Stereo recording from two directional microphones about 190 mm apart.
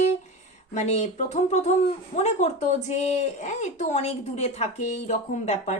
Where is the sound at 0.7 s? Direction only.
35° left (ahead or behind).